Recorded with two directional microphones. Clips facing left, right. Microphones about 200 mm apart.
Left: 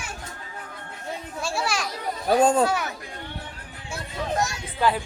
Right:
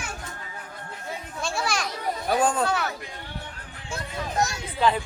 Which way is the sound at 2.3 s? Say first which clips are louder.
Left 5 dB; 25° left (ahead or behind).